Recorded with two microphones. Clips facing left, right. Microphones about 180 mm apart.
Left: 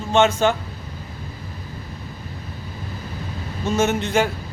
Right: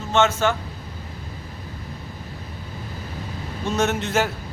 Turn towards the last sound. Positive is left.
turn(degrees=0)  # may be behind; listen again after turning